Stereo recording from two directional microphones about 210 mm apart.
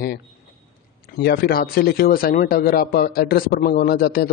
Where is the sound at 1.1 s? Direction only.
45° left (ahead or behind).